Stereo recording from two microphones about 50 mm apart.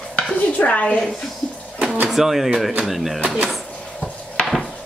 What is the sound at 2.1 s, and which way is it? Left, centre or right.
Speech, centre.